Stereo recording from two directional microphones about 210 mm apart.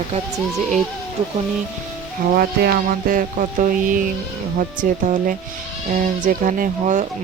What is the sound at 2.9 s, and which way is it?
Speech, 40° right (ahead or behind).